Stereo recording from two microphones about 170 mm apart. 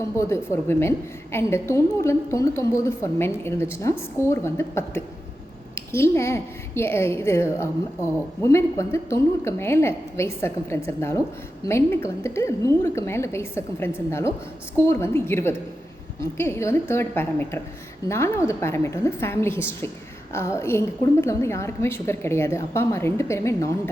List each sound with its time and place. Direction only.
0.2 s a woman's voice: 15° left (ahead or behind)